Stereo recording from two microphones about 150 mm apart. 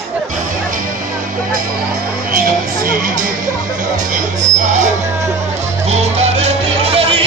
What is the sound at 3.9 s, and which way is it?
Music, 55° right (ahead or behind).